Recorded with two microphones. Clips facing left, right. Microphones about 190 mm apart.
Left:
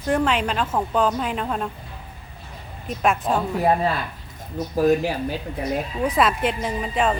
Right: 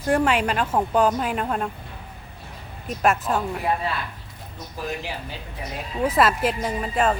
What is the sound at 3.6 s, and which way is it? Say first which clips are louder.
Speech: left 5 dB; 40° left (ahead or behind).